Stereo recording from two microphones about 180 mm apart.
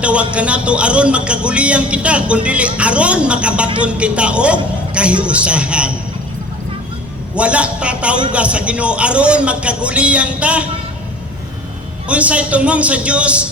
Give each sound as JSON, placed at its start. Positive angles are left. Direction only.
{"t": 0.0, "sound": "speech", "side_deg": -5}
{"t": 7.3, "sound": "speech", "side_deg": -5}
{"t": 12.0, "sound": "speech", "side_deg": -5}